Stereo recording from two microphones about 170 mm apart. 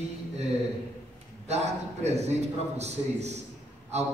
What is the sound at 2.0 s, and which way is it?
A man's voice, 40° right (ahead or behind).